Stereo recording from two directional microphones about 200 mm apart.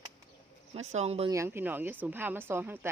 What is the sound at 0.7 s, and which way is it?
Speech, 35° right (ahead or behind).